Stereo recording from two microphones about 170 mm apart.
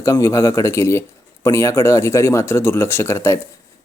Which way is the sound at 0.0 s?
15° left (ahead or behind).